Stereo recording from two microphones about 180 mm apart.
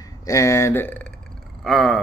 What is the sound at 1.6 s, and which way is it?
Speech, centre (ahead or behind).